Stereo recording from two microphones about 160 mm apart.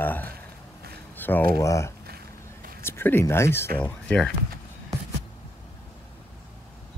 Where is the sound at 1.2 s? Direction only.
10° left (ahead or behind).